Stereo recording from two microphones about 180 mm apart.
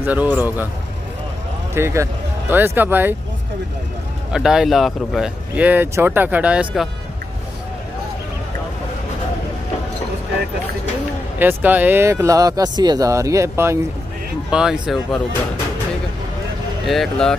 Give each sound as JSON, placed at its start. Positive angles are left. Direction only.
{"t": 0.0, "sound": "speech", "side_deg": -10}
{"t": 1.7, "sound": "speech", "side_deg": -15}
{"t": 4.3, "sound": "speech", "side_deg": -5}
{"t": 11.3, "sound": "speech", "side_deg": -10}
{"t": 14.5, "sound": "speech", "side_deg": -5}
{"t": 16.8, "sound": "speech", "side_deg": 0}